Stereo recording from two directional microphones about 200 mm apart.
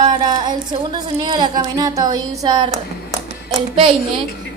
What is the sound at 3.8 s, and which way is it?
Speech, 25° right (ahead or behind).